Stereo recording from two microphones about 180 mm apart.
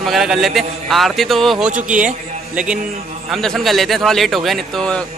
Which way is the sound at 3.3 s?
Centre (ahead or behind).